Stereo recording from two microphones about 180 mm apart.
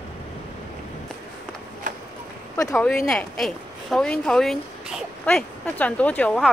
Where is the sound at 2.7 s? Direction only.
5° left (ahead or behind).